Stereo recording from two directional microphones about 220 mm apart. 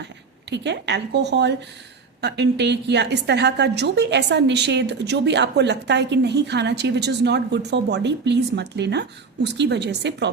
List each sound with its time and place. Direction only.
0.5 s a woman's voice: 50° right (ahead or behind)